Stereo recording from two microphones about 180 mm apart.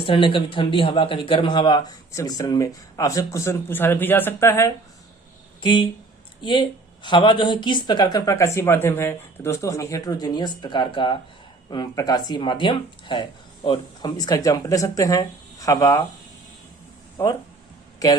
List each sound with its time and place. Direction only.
0.0 s speech: 30° left (ahead or behind)
5.6 s speech: 25° left (ahead or behind)
17.2 s speech: 15° left (ahead or behind)